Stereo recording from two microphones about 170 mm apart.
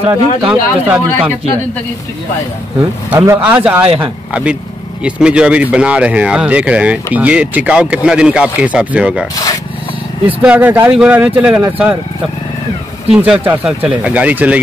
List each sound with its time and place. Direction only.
0.1 s speech: 10° right (ahead or behind)
3.1 s speech: 10° right (ahead or behind)
9.3 s a sound: 20° left (ahead or behind)
10.2 s speech: 10° right (ahead or behind)
13.1 s speech: 5° right (ahead or behind)